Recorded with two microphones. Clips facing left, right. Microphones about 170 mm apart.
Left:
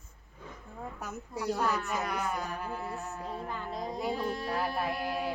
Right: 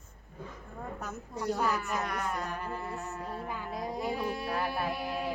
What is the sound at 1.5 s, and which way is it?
Speech, 5° right (ahead or behind).